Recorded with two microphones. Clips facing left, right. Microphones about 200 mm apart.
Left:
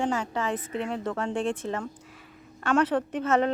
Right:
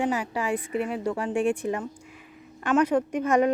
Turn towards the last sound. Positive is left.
turn(degrees=-10)  # may be behind; listen again after turning